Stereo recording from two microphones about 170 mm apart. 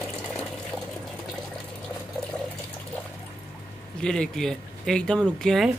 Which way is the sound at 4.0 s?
5° left (ahead or behind).